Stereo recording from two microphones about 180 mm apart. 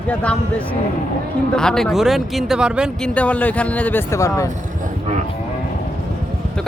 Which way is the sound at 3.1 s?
5° left (ahead or behind).